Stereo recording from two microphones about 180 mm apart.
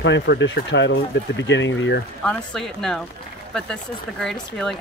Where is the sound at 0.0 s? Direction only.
85° left.